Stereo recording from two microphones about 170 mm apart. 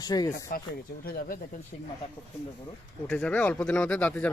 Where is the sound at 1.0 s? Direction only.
60° left (ahead or behind).